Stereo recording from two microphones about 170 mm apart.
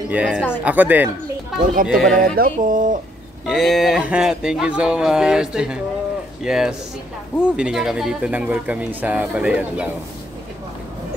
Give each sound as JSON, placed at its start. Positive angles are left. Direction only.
{"t": 0.1, "sound": "speech", "side_deg": -5}
{"t": 1.9, "sound": "speech", "side_deg": 0}
{"t": 2.1, "sound": "a sound", "side_deg": -55}
{"t": 3.4, "sound": "speech", "side_deg": 0}